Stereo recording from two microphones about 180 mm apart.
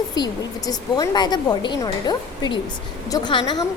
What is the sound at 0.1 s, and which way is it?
A woman's voice, 20° left (ahead or behind).